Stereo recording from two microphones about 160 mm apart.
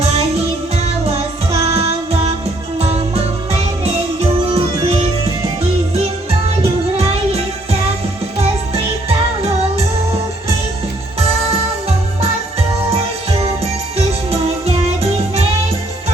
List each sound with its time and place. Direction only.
0.0 s music: 40° right (ahead or behind)
1.7 s music: 40° right (ahead or behind)